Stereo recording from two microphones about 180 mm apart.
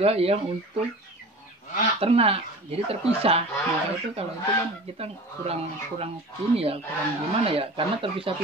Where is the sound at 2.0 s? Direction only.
35° right (ahead or behind).